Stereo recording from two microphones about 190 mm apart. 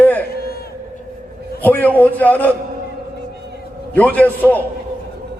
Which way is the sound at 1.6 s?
10° left (ahead or behind).